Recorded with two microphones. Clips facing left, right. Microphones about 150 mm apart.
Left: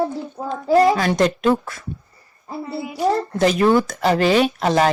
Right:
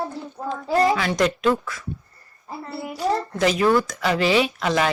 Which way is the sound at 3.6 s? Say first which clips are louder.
Left 2 dB; 25° left (ahead or behind).